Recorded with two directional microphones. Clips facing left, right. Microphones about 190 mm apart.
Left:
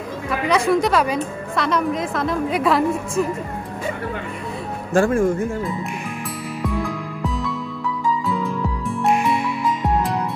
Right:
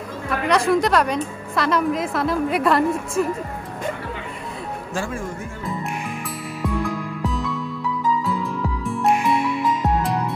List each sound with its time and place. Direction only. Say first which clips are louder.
0.3 s a woman's voice: even; centre (ahead or behind)
4.9 s speech: left 11 dB; 55° left (ahead or behind)
7.2 s music: even; centre (ahead or behind)